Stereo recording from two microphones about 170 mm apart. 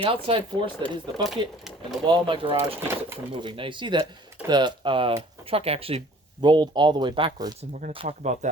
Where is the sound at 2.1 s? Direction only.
30° right (ahead or behind).